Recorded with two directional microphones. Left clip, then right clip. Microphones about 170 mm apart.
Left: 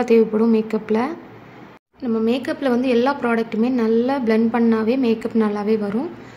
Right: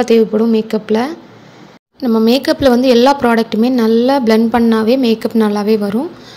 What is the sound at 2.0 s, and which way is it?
A woman's voice, 25° right (ahead or behind).